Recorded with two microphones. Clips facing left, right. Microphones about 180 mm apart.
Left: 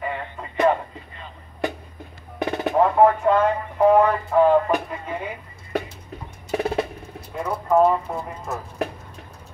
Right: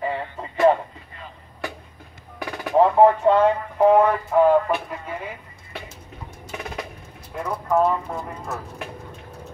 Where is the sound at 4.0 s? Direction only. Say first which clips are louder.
Even; 5° right (ahead or behind).